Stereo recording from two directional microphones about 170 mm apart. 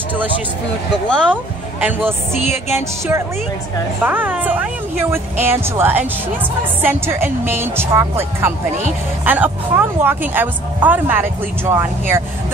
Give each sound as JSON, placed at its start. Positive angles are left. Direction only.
{"t": 1.3, "sound": "a woman's voice", "side_deg": -10}